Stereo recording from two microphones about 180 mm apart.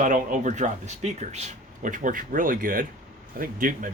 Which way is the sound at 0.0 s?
45° right (ahead or behind).